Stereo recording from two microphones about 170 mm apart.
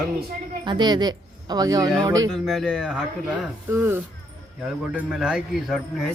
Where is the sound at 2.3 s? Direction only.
Centre (ahead or behind).